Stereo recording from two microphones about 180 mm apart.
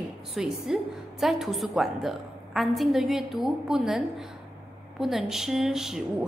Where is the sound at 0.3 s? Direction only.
Centre (ahead or behind).